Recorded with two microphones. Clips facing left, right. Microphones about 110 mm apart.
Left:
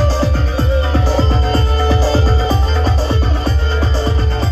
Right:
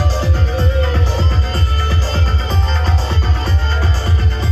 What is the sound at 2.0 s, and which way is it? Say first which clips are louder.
Music: left 7 dB; 10° left (ahead or behind).